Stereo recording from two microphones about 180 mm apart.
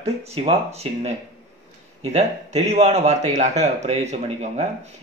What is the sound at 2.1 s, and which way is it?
A man's voice, 35° right (ahead or behind).